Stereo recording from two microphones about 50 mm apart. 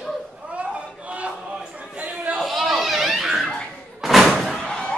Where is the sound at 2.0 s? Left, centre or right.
Right.